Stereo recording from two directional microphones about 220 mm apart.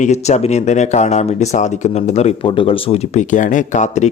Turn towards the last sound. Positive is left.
turn(degrees=35)  # may be behind; listen again after turning